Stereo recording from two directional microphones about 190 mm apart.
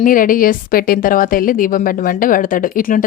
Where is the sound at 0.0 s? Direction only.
45° left (ahead or behind).